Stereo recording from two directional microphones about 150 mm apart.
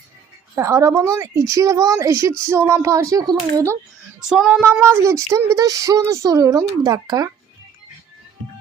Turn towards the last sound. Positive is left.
turn(degrees=-25)  # may be behind; listen again after turning